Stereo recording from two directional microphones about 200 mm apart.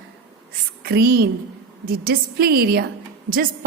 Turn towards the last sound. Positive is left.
turn(degrees=-45)  # may be behind; listen again after turning